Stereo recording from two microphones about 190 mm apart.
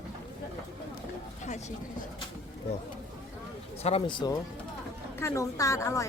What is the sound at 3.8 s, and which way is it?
A woman's voice, 30° left (ahead or behind).